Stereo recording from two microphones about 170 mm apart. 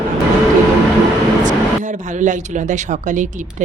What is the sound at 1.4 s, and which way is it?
Speech, 45° right (ahead or behind).